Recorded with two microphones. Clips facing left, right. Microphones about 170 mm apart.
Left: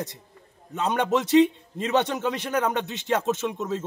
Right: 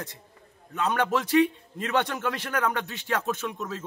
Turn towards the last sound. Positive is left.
turn(degrees=20)  # may be behind; listen again after turning